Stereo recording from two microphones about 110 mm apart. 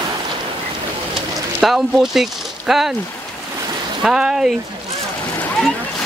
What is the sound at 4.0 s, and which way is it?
Speech, 5° right (ahead or behind).